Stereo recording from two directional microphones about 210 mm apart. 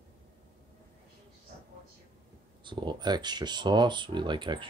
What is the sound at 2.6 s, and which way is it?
Speech, 20° right (ahead or behind).